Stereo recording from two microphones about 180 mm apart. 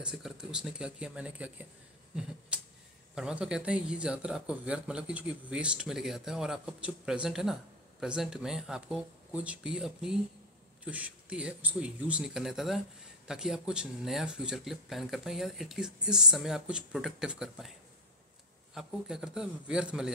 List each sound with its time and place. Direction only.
0.0 s speech: 5° right (ahead or behind)
2.5 s a sound: 5° right (ahead or behind)
3.2 s speech: 5° right (ahead or behind)
18.8 s speech: 5° right (ahead or behind)